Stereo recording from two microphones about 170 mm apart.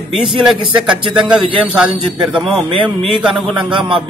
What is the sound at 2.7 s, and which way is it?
Speech, 30° right (ahead or behind).